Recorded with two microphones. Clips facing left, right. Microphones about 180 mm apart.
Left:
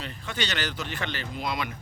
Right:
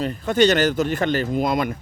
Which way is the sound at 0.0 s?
45° right (ahead or behind).